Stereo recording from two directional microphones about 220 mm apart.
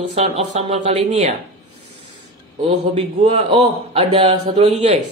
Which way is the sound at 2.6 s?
30° right (ahead or behind).